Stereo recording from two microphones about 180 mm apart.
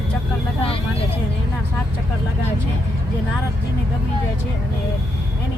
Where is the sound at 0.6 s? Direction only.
30° left (ahead or behind).